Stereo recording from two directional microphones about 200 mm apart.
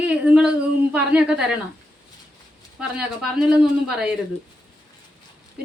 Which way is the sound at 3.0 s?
5° right (ahead or behind).